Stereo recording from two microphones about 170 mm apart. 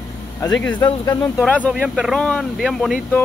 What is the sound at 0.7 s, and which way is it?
Speech, 25° left (ahead or behind).